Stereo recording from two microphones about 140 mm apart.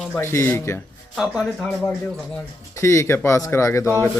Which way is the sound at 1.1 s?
Centre (ahead or behind).